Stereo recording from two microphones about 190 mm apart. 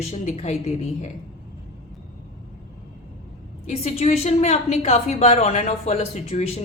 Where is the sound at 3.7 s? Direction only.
35° left (ahead or behind).